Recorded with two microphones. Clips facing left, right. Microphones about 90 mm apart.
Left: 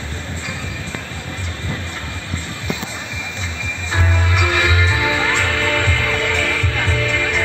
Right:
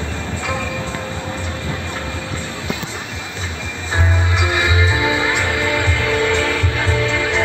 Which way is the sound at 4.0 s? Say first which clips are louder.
Even; 20° right (ahead or behind).